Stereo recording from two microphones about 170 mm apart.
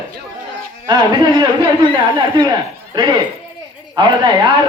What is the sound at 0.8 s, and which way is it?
A man's voice, 25° right (ahead or behind).